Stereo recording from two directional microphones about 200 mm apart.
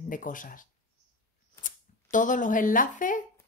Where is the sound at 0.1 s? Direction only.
40° left (ahead or behind).